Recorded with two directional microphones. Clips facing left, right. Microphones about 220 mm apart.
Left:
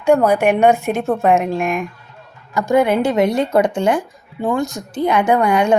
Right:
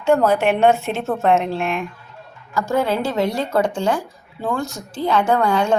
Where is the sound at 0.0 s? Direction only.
15° left (ahead or behind).